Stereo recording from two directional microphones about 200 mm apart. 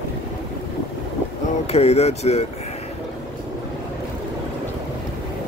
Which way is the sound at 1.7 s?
30° left (ahead or behind).